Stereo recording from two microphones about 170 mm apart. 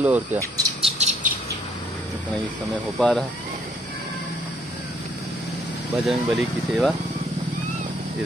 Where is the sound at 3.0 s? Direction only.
5° left (ahead or behind).